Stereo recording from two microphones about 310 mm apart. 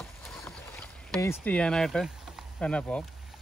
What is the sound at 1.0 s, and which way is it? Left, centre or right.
Speech, centre.